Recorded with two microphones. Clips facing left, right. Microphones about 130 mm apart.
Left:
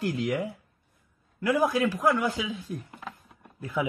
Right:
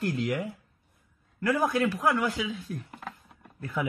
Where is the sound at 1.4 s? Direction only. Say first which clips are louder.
Left 1 dB; 20° left (ahead or behind).